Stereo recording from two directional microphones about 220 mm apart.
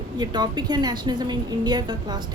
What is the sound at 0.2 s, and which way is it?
A woman's voice, 20° right (ahead or behind).